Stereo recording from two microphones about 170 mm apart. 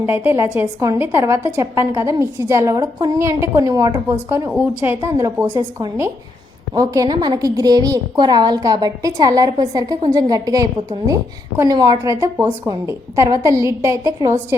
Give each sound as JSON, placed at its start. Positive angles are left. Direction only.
{"t": 0.0, "sound": "a woman's voice", "side_deg": -15}